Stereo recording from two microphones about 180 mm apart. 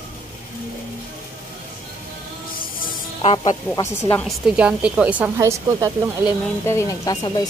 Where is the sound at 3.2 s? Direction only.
30° left (ahead or behind).